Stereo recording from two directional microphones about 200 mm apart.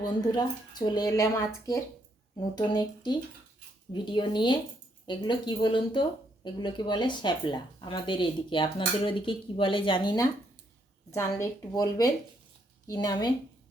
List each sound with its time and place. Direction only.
0.0 s a woman's voice: 20° left (ahead or behind)